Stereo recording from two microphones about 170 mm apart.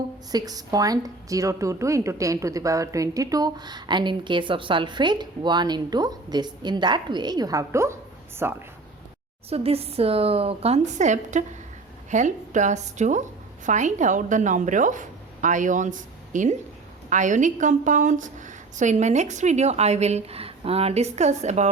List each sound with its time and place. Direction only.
0.3 s a woman's voice: 20° right (ahead or behind)
9.5 s a woman's voice: 35° right (ahead or behind)